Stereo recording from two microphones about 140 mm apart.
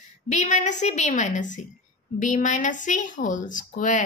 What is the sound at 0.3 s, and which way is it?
A woman's voice, 60° left (ahead or behind).